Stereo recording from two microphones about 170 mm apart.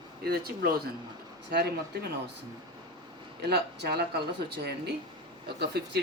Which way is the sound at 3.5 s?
70° right (ahead or behind).